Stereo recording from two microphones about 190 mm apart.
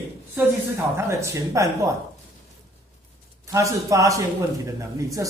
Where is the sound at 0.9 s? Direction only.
15° right (ahead or behind).